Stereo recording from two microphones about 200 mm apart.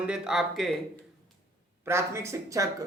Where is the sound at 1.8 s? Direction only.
15° right (ahead or behind).